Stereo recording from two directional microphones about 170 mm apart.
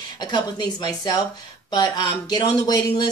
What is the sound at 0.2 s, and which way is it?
Speech, 25° left (ahead or behind).